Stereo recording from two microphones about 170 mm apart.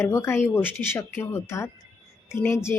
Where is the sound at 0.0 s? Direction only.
15° left (ahead or behind).